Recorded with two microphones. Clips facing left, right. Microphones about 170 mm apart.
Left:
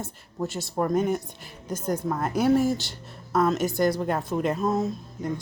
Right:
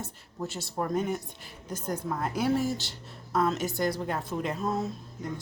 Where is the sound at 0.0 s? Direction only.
50° left (ahead or behind).